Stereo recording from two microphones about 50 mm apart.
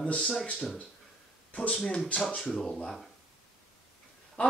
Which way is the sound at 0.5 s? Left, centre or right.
Centre.